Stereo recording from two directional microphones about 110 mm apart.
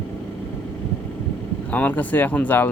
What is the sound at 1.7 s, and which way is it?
Speech, 15° left (ahead or behind).